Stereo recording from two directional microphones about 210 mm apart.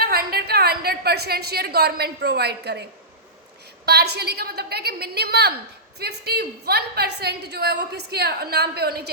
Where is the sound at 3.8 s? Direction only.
50° right (ahead or behind).